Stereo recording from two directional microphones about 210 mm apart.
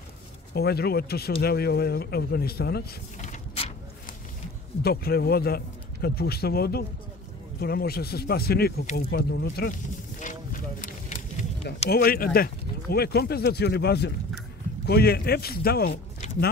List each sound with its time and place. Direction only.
0.6 s a man's voice: 50° left (ahead or behind)
3.2 s vehicle: 30° left (ahead or behind)
4.8 s a man's voice: 45° left (ahead or behind)
8.9 s a sound: 50° left (ahead or behind)
11.9 s a man's voice: 45° left (ahead or behind)